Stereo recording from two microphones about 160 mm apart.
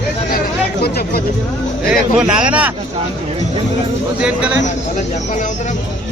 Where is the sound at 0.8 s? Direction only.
75° left (ahead or behind).